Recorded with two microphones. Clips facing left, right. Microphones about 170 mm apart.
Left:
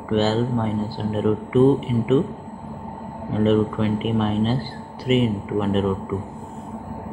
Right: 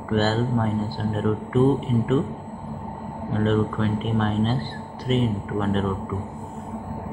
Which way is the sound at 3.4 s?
5° left (ahead or behind).